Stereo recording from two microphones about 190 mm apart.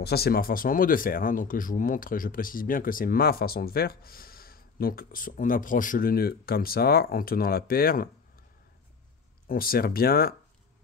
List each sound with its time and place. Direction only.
0.0 s speech: 55° left (ahead or behind)
9.5 s speech: 50° left (ahead or behind)